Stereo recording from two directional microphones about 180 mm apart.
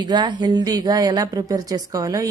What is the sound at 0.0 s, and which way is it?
A woman's voice, 25° right (ahead or behind).